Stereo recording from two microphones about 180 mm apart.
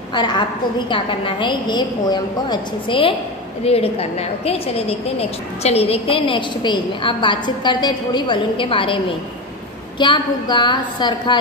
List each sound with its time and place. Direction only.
0.1 s a woman's voice: 25° left (ahead or behind)